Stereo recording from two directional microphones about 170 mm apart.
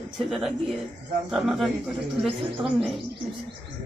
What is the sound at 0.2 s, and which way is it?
Speech, centre (ahead or behind).